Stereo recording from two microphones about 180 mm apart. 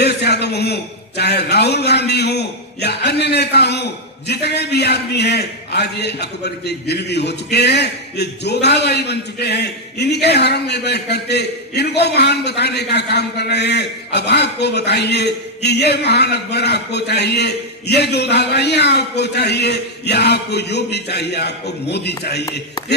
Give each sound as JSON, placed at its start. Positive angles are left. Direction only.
{"t": 0.0, "sound": "a man's voice", "side_deg": 65}